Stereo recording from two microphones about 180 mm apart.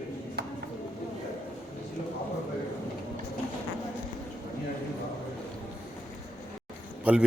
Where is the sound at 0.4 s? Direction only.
65° right (ahead or behind).